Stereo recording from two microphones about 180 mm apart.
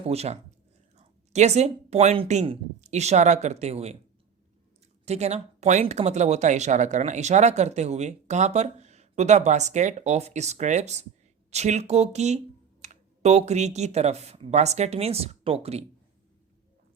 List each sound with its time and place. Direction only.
0.1 s speech: 35° right (ahead or behind)
5.0 s speech: 35° right (ahead or behind)